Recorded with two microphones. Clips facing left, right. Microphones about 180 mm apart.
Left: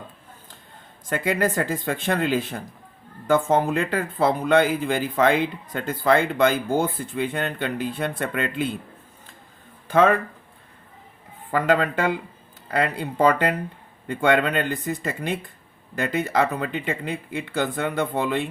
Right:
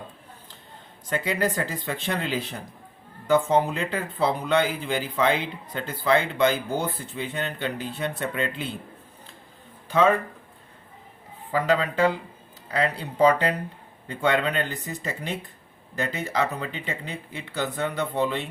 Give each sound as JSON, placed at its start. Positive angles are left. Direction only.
{"t": 1.0, "sound": "speech", "side_deg": 50}
{"t": 11.5, "sound": "speech", "side_deg": 55}